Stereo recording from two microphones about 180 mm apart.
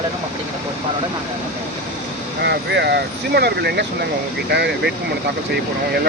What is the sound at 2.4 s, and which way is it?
Speech, 70° right (ahead or behind).